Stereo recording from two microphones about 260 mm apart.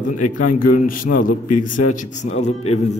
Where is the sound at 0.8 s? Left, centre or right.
Left.